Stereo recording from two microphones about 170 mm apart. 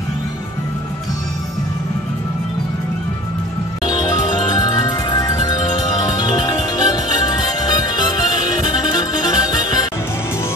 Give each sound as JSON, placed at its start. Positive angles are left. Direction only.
{"t": 3.8, "sound": "music", "side_deg": 25}